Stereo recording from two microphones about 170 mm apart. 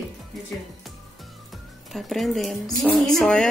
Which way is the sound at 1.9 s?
Centre (ahead or behind).